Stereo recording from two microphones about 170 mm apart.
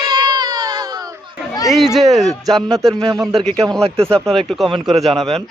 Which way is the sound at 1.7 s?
Centre (ahead or behind).